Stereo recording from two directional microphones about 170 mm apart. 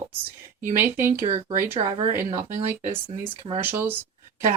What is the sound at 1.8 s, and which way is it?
Speech, 35° right (ahead or behind).